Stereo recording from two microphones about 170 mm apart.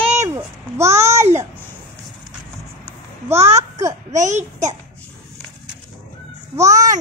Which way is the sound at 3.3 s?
40° right (ahead or behind).